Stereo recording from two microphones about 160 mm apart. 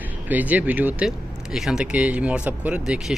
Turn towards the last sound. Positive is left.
turn(degrees=-5)  # may be behind; listen again after turning